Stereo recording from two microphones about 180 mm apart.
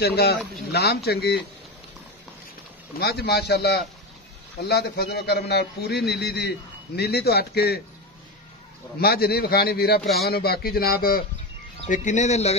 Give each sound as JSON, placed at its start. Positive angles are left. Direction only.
{"t": 0.0, "sound": "a man's voice", "side_deg": 65}
{"t": 3.0, "sound": "a man's voice", "side_deg": 65}
{"t": 9.0, "sound": "a man's voice", "side_deg": 60}
{"t": 11.9, "sound": "speech", "side_deg": 45}